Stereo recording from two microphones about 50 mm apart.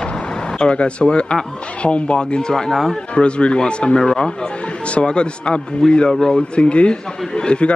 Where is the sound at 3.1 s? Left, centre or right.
Left.